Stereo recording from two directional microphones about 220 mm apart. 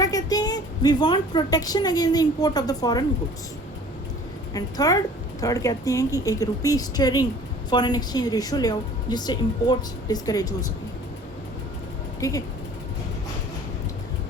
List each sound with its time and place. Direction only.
0.0 s a woman's voice: 15° left (ahead or behind)
4.5 s a woman's voice: 15° left (ahead or behind)
12.2 s a woman's voice: 15° left (ahead or behind)